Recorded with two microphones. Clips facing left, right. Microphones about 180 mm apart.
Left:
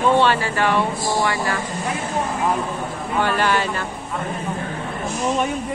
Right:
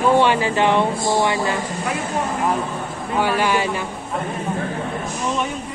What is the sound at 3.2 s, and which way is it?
Speech, 10° right (ahead or behind).